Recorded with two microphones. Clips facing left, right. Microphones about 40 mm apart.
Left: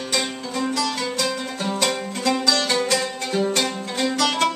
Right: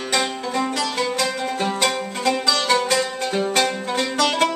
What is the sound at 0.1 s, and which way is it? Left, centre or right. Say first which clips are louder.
Music: right 4 dB; right.